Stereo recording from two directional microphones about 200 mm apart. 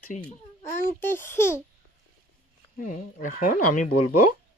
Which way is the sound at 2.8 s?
40° left (ahead or behind).